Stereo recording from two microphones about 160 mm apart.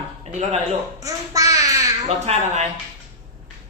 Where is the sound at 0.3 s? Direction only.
45° right (ahead or behind).